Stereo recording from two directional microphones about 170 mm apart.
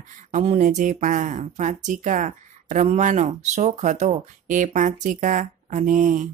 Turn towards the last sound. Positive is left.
turn(degrees=-45)  # may be behind; listen again after turning